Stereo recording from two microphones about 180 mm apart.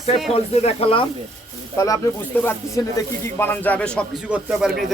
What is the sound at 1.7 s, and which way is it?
A man's voice, 20° left (ahead or behind).